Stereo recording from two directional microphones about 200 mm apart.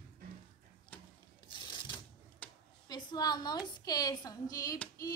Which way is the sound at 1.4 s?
20° left (ahead or behind).